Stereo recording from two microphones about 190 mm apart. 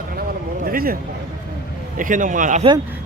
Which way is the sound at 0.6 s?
50° right (ahead or behind).